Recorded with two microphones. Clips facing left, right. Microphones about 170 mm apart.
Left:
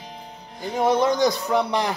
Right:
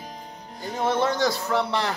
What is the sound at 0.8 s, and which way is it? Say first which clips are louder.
Speech: left 4 dB; 15° left (ahead or behind).